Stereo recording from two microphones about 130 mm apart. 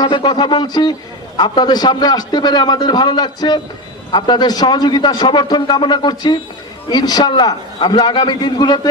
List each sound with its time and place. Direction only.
0.0 s a man's voice: 35° left (ahead or behind)